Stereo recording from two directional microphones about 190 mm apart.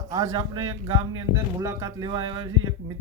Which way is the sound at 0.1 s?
20° right (ahead or behind).